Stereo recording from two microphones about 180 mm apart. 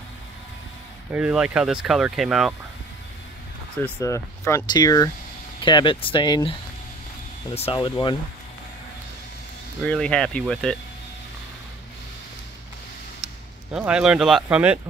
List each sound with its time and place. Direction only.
1.1 s speech: 5° right (ahead or behind)
3.7 s speech: 10° left (ahead or behind)
7.5 s speech: 30° left (ahead or behind)
9.8 s speech: 5° left (ahead or behind)
13.7 s speech: 5° right (ahead or behind)